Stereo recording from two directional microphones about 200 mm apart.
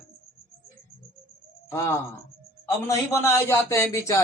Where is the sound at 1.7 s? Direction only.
10° left (ahead or behind).